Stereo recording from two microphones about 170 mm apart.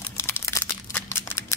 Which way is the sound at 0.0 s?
15° left (ahead or behind).